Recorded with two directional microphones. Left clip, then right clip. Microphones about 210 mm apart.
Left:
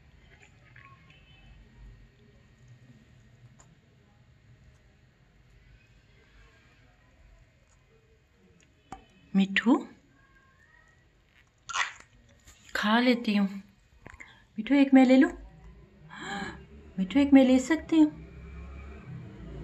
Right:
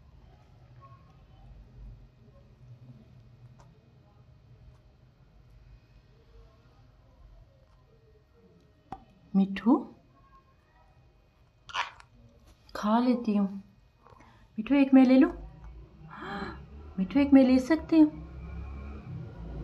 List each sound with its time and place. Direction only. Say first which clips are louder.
8.9 s a sound: even; 5° right (ahead or behind)
12.7 s a woman's voice: left 2 dB; 5° left (ahead or behind)
14.6 s a woman's voice: left 1 dB; 10° left (ahead or behind)
16.1 s gasp: left 1 dB; 10° left (ahead or behind)
17.0 s a woman's voice: left 1 dB; 10° left (ahead or behind)